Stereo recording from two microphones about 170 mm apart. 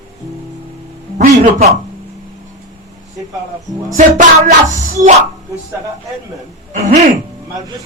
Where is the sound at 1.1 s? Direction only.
50° right (ahead or behind).